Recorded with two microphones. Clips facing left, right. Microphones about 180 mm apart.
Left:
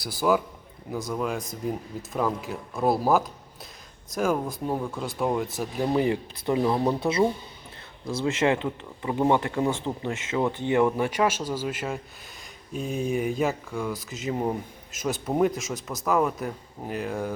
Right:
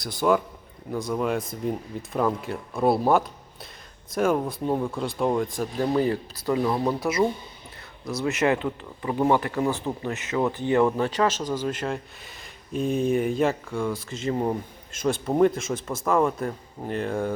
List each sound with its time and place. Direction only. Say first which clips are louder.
0.0 s speech: right 1 dB; 5° left (ahead or behind)